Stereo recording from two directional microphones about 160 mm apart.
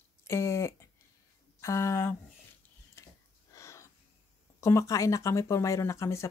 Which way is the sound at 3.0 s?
15° left (ahead or behind).